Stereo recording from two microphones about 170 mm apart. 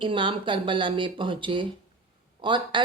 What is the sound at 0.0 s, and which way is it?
Speech, 30° right (ahead or behind).